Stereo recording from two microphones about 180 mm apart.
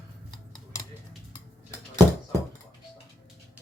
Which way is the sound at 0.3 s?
25° left (ahead or behind).